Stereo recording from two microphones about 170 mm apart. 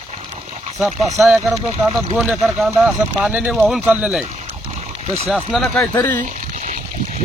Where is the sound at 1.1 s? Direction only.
Centre (ahead or behind).